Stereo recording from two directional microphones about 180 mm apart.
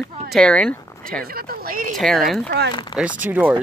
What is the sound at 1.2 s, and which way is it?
Speech, 55° right (ahead or behind).